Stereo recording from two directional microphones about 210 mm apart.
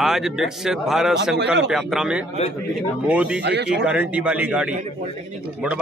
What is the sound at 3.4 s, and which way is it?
Speech, 55° right (ahead or behind).